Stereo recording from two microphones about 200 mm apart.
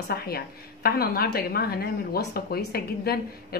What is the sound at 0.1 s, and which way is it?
Speech, 50° left (ahead or behind).